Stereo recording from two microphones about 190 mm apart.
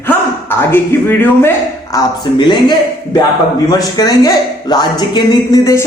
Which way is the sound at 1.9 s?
25° left (ahead or behind).